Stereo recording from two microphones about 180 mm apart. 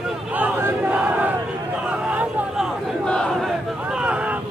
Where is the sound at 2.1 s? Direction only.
10° right (ahead or behind).